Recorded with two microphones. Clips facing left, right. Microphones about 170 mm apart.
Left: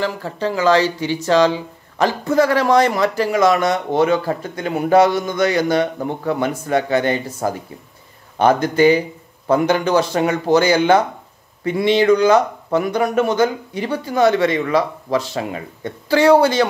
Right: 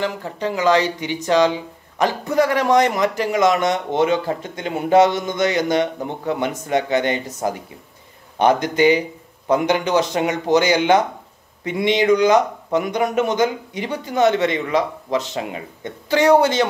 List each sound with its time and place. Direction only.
0.0 s speech: 15° right (ahead or behind)